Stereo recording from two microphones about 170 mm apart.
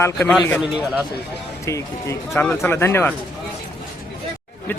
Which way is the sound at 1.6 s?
15° left (ahead or behind).